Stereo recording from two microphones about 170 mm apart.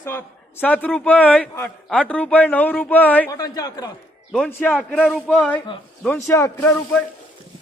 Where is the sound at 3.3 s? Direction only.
20° left (ahead or behind).